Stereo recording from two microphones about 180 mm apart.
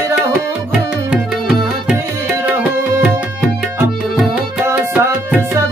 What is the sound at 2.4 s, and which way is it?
Music, 5° right (ahead or behind).